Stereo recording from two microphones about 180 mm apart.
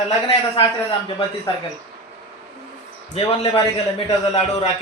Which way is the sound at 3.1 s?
35° left (ahead or behind).